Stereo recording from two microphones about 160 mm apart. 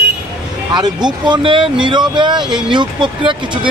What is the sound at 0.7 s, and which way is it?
Speech, 30° right (ahead or behind).